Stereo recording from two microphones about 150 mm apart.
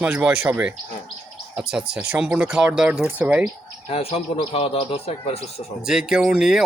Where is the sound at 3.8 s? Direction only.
40° left (ahead or behind).